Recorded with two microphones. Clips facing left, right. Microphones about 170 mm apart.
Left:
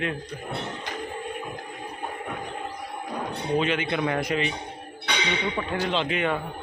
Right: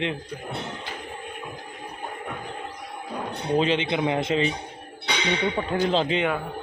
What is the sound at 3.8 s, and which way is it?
Speech, 20° right (ahead or behind).